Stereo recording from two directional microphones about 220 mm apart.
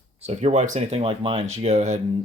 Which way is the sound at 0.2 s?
30° right (ahead or behind).